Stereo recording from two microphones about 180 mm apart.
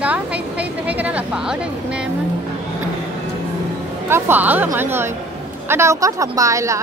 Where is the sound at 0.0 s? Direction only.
5° right (ahead or behind).